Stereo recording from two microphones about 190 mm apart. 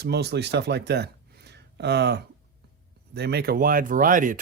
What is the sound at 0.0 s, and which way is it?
Speech, 60° right (ahead or behind).